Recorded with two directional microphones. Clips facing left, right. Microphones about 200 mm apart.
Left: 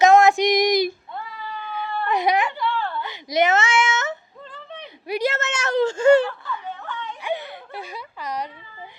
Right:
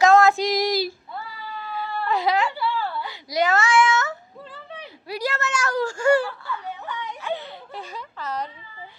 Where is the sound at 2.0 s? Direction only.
20° left (ahead or behind).